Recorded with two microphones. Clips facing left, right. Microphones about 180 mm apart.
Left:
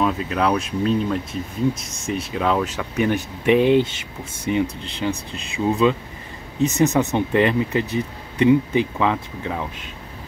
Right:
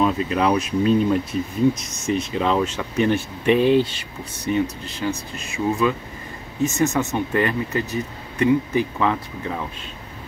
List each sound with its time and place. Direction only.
0.0 s speech: centre (ahead or behind)
2.0 s speech: 5° left (ahead or behind)